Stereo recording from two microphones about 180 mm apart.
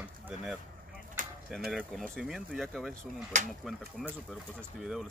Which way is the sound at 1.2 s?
50° right (ahead or behind).